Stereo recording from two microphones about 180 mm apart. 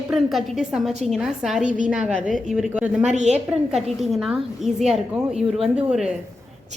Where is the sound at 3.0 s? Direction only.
40° right (ahead or behind).